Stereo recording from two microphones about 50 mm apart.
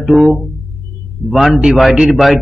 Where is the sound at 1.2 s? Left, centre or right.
Centre.